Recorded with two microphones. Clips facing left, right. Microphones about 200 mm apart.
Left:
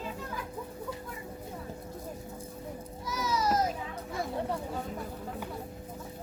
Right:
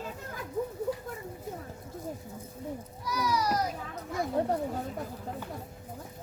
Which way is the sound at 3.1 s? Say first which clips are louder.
Even; 25° left (ahead or behind).